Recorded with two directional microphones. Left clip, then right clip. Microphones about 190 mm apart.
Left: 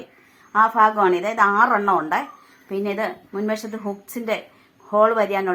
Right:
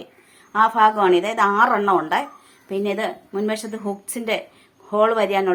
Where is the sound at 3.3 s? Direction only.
30° right (ahead or behind).